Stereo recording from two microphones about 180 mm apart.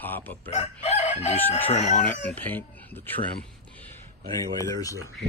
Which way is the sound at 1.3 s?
10° left (ahead or behind).